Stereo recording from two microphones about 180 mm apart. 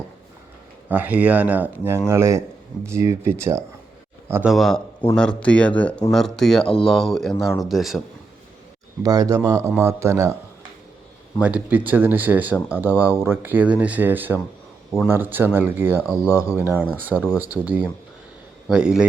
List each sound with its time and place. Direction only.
0.9 s speech: 10° right (ahead or behind)
4.5 s speech: centre (ahead or behind)
9.0 s speech: 20° right (ahead or behind)
11.3 s speech: 10° right (ahead or behind)